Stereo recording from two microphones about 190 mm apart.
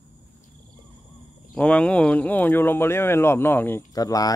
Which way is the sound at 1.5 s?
5° left (ahead or behind).